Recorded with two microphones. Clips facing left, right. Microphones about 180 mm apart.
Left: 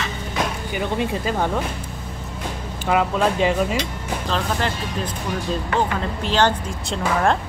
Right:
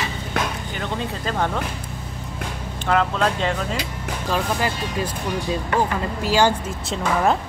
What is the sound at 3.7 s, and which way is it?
Speech, 10° right (ahead or behind).